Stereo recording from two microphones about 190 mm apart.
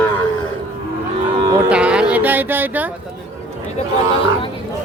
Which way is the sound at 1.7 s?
5° right (ahead or behind).